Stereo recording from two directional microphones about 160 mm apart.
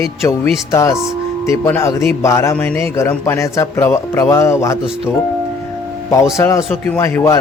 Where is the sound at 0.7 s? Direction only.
20° left (ahead or behind).